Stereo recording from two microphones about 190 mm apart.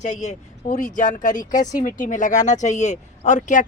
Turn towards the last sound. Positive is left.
turn(degrees=40)  # may be behind; listen again after turning